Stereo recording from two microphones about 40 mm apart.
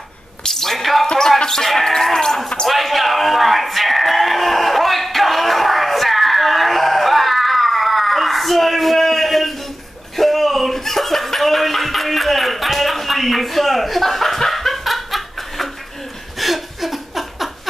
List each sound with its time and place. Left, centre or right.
0.4 s a sound: centre
1.0 s music: centre
1.7 s sheep: centre
2.6 s a sound: centre
10.1 s chuckle: centre
16.3 s laughter: centre